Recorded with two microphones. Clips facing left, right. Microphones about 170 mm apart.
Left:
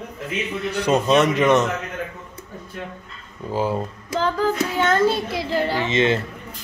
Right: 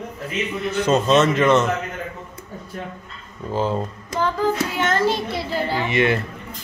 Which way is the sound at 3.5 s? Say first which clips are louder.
Even; 10° left (ahead or behind).